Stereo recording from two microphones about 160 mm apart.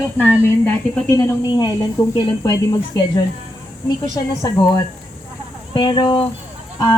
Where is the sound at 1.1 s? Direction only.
20° left (ahead or behind).